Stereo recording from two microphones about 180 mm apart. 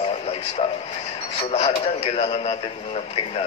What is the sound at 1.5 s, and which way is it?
A man's voice, 35° left (ahead or behind).